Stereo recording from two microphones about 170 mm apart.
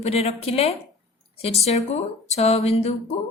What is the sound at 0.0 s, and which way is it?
A woman's voice, 35° left (ahead or behind).